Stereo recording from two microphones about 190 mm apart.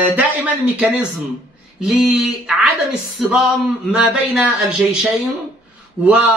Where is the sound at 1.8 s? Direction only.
Centre (ahead or behind).